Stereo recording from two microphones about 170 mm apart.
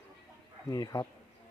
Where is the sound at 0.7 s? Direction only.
20° left (ahead or behind).